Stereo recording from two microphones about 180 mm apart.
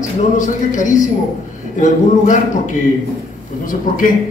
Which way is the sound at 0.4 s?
45° left (ahead or behind).